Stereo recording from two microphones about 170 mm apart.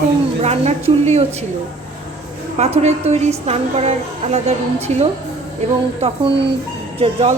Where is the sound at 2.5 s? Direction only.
40° right (ahead or behind).